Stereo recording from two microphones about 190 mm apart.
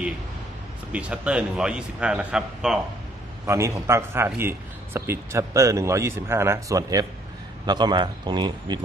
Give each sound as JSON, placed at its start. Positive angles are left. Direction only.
{"t": 0.9, "sound": "a man's voice", "side_deg": -5}
{"t": 3.4, "sound": "a man's voice", "side_deg": -15}